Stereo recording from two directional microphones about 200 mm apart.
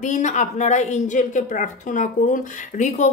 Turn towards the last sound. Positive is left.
turn(degrees=35)  # may be behind; listen again after turning